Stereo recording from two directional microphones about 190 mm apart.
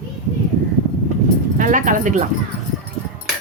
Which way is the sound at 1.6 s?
45° right (ahead or behind).